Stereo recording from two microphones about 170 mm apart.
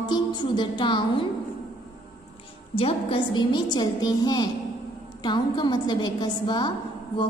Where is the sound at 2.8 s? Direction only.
35° left (ahead or behind).